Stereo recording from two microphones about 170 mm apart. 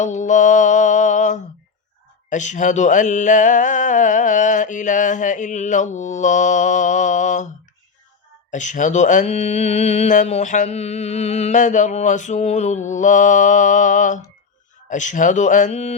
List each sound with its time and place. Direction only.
0.0 s mantra: 45° left (ahead or behind)